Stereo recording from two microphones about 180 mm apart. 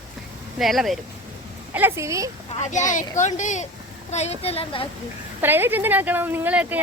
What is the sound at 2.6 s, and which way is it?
A child's voice, 45° left (ahead or behind).